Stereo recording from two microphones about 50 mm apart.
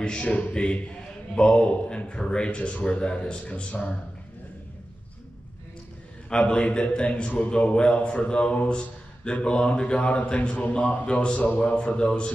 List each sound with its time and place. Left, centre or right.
0.0 s a man's voice: centre
6.3 s a man's voice: left